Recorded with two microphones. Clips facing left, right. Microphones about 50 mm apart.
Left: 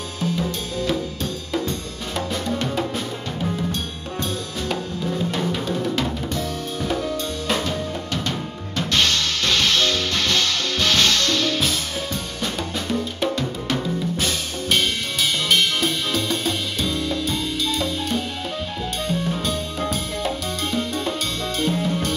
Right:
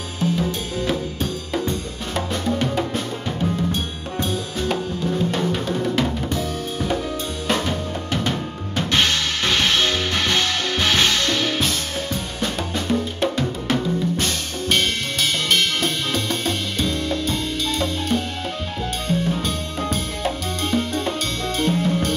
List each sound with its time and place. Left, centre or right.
0.2 s drum kit: centre
1.7 s music: centre
3.3 s drum: centre
4.6 s music: centre
7.4 s drum kit: centre
8.1 s drum: centre
11.6 s music: centre
15.5 s drum kit: centre
19.0 s music: centre